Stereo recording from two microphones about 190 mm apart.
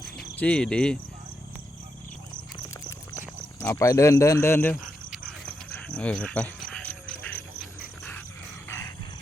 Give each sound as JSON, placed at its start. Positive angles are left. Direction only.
{"t": 0.3, "sound": "cricket", "side_deg": 5}
{"t": 3.6, "sound": "speech", "side_deg": 15}
{"t": 5.1, "sound": "a sound", "side_deg": 5}